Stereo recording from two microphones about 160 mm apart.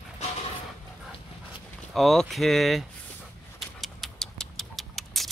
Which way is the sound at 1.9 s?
Centre (ahead or behind).